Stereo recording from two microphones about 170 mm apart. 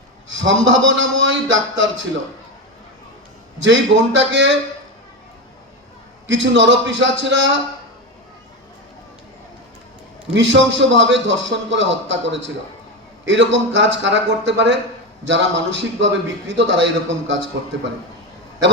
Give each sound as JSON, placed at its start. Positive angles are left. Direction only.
{"t": 0.3, "sound": "a man's voice", "side_deg": -90}
{"t": 3.6, "sound": "a man's voice", "side_deg": -90}
{"t": 6.2, "sound": "a man's voice", "side_deg": -90}
{"t": 10.3, "sound": "a man's voice", "side_deg": -90}